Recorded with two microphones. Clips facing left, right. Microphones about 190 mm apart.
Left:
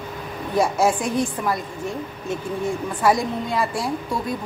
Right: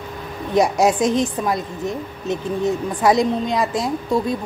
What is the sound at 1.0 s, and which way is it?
Speech, 90° right.